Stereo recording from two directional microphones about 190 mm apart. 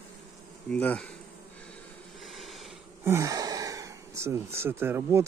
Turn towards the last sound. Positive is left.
turn(degrees=-10)  # may be behind; listen again after turning